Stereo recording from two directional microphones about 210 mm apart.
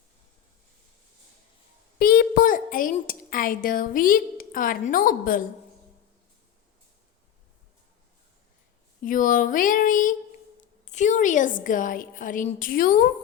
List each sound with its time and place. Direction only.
2.0 s speech: 45° left (ahead or behind)
9.0 s a woman's voice: 40° left (ahead or behind)